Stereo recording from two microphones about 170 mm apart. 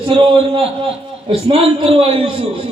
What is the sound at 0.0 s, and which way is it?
A man's voice, 30° right (ahead or behind).